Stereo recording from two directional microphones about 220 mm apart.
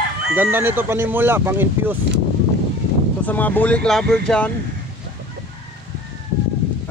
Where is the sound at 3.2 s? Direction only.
5° left (ahead or behind).